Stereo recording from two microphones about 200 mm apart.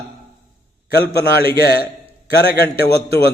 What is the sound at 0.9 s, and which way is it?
Speech, 55° left (ahead or behind).